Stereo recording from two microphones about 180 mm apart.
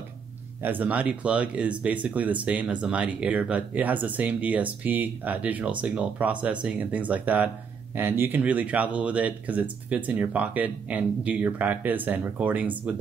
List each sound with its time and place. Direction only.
0.6 s speech: 10° right (ahead or behind)